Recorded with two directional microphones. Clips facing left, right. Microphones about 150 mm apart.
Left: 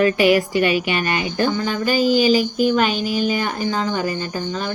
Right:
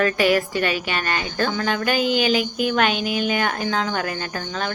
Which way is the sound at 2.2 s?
55° right (ahead or behind).